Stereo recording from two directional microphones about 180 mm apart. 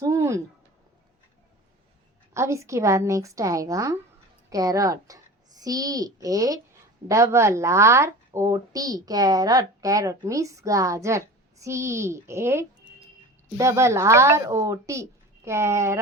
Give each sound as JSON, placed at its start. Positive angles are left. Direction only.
{"t": 0.0, "sound": "a woman's voice", "side_deg": -15}
{"t": 2.3, "sound": "a woman's voice", "side_deg": -15}